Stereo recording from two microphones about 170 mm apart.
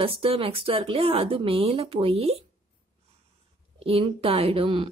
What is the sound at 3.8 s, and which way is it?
Speech, 35° right (ahead or behind).